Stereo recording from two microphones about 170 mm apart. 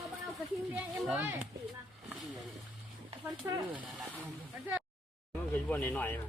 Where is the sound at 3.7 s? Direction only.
5° right (ahead or behind).